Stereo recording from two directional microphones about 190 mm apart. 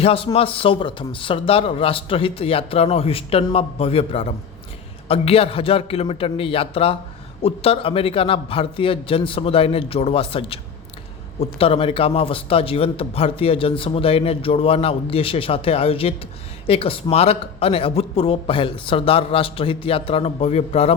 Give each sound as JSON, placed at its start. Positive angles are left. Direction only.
{"t": 0.0, "sound": "a man's voice", "side_deg": 30}